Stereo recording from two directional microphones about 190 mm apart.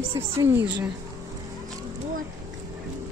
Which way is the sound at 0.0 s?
25° right (ahead or behind).